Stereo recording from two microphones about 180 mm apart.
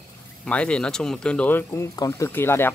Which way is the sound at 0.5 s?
5° left (ahead or behind).